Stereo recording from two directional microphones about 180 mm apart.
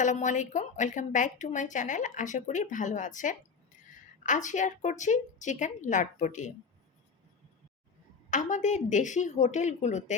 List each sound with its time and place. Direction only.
0.0 s speech: 45° left (ahead or behind)
8.3 s a woman's voice: 45° left (ahead or behind)